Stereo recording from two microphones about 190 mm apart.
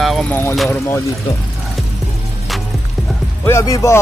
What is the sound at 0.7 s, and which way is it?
Speech, 15° left (ahead or behind).